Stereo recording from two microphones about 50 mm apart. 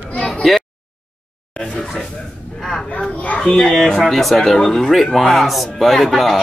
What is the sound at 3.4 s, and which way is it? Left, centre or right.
Speech, centre.